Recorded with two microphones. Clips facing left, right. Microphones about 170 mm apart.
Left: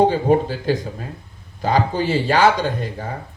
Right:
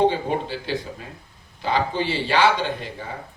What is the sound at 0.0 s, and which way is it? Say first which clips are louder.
Speech: left 5 dB; 45° left (ahead or behind).